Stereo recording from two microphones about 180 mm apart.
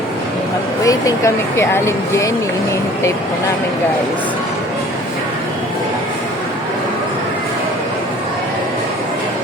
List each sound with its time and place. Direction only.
0.9 s speech: 20° left (ahead or behind)